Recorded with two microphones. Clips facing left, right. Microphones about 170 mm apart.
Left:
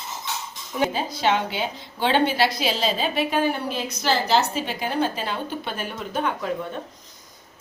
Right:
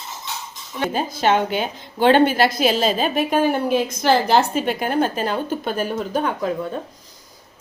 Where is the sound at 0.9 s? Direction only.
50° right (ahead or behind).